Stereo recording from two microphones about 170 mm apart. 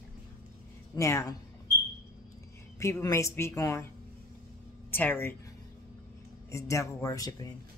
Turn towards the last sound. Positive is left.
turn(degrees=20)  # may be behind; listen again after turning